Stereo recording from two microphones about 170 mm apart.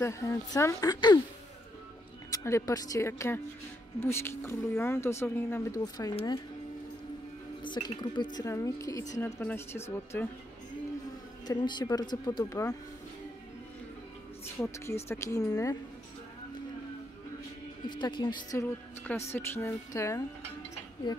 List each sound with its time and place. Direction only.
0.0 s a woman's voice: 15° left (ahead or behind)
2.3 s speech: 20° left (ahead or behind)
7.6 s a woman's voice: 25° left (ahead or behind)
11.4 s a woman's voice: 25° left (ahead or behind)
15.0 s a woman's voice: 20° left (ahead or behind)
17.8 s a woman's voice: 25° left (ahead or behind)